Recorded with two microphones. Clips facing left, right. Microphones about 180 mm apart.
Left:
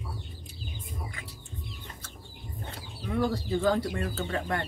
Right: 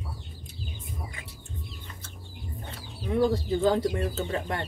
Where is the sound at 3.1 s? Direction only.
20° right (ahead or behind).